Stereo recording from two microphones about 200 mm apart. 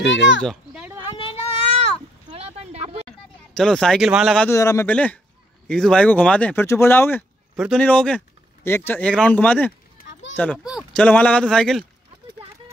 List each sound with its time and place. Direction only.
0.0 s speech: 65° left (ahead or behind)
0.4 s speech: centre (ahead or behind)
1.0 s a sound: 25° left (ahead or behind)
2.2 s a sound: 30° right (ahead or behind)
3.1 s speech: 5° left (ahead or behind)
4.5 s speech: 15° left (ahead or behind)
7.5 s speech: 5° right (ahead or behind)
10.0 s children playing: 45° left (ahead or behind)
10.3 s speech: 10° left (ahead or behind)
10.6 s speech: 5° right (ahead or behind)